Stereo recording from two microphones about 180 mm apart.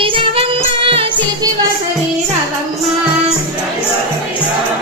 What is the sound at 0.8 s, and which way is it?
Music, 30° right (ahead or behind).